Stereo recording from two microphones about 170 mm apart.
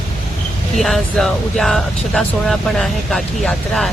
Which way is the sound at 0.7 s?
Centre (ahead or behind).